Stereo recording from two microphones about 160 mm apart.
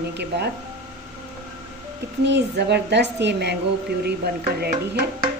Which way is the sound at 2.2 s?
90° right.